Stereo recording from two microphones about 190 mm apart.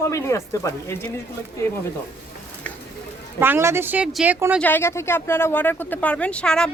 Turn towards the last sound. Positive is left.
turn(degrees=5)  # may be behind; listen again after turning